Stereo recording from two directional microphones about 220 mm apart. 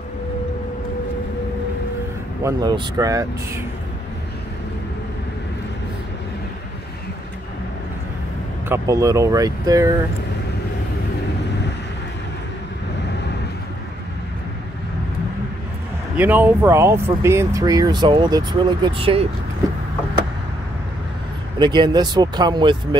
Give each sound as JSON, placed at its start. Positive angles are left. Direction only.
{"t": 2.4, "sound": "speech", "side_deg": -15}
{"t": 8.6, "sound": "speech", "side_deg": -10}
{"t": 16.2, "sound": "speech", "side_deg": -10}
{"t": 21.5, "sound": "speech", "side_deg": -20}